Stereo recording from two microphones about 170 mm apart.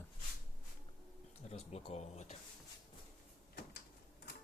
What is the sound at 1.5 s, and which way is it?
Speech, 40° left (ahead or behind).